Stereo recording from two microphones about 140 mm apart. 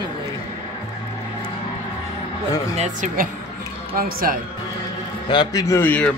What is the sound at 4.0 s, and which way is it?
Speech, 90° right.